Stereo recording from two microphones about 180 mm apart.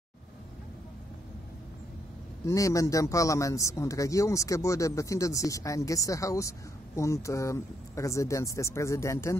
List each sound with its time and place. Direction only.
2.4 s speech: 20° left (ahead or behind)